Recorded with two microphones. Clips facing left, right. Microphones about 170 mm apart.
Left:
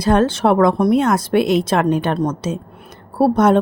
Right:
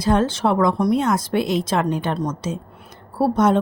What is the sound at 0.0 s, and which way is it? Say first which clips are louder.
Speech: left 4 dB; 65° left (ahead or behind).